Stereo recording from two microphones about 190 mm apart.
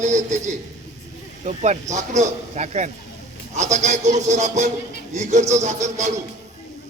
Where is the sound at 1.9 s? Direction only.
40° right (ahead or behind).